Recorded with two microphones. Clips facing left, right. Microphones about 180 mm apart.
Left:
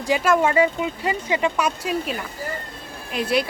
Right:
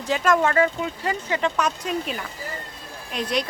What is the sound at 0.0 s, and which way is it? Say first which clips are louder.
Speech: left 2 dB; 10° left (ahead or behind).